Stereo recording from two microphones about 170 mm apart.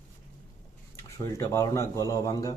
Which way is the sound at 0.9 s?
20° left (ahead or behind).